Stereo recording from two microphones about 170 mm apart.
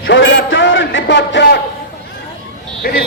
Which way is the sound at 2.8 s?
60° left (ahead or behind).